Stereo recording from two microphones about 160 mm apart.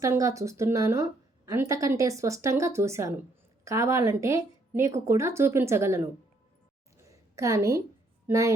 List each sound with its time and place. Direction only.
0.0 s a woman's voice: 20° right (ahead or behind)
7.1 s a sound: 20° right (ahead or behind)
8.3 s a woman's voice: 20° right (ahead or behind)